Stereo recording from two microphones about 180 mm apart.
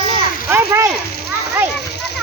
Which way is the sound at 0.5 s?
15° right (ahead or behind).